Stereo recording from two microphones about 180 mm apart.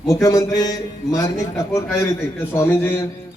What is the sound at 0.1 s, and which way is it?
A man's voice, 20° left (ahead or behind).